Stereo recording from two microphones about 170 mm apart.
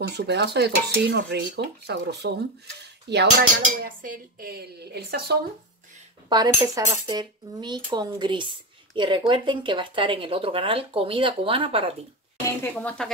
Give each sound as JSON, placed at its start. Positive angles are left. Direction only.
{"t": 0.3, "sound": "dishes", "side_deg": -80}
{"t": 3.1, "sound": "speech", "side_deg": -75}
{"t": 6.2, "sound": "speech", "side_deg": -25}
{"t": 12.4, "sound": "speech", "side_deg": 10}